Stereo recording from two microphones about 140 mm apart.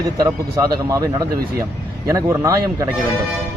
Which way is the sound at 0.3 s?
20° right (ahead or behind).